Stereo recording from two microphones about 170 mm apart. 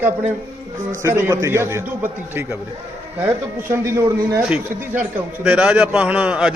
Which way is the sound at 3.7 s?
15° right (ahead or behind).